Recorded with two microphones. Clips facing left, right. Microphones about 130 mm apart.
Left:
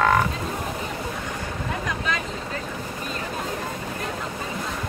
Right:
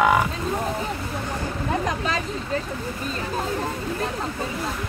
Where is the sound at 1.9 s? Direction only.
35° right (ahead or behind).